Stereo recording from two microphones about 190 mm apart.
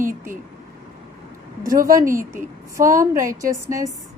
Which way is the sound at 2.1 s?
45° right (ahead or behind).